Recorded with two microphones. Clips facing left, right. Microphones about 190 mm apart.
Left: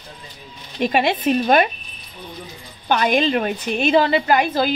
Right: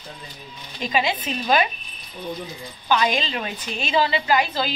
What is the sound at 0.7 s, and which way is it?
Speech, 60° left (ahead or behind).